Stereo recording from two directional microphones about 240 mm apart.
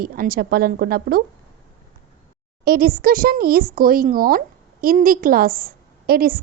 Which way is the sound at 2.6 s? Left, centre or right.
Right.